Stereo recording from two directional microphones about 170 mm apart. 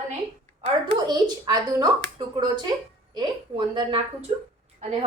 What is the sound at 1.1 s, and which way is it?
A woman's voice, 25° right (ahead or behind).